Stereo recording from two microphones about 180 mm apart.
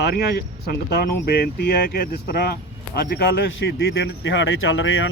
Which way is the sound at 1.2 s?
60° left (ahead or behind).